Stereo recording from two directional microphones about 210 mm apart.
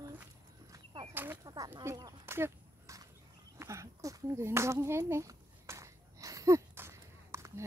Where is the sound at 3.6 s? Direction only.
15° right (ahead or behind).